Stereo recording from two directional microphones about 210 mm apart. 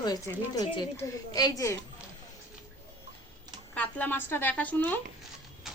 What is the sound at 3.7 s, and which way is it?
A woman's voice, 5° left (ahead or behind).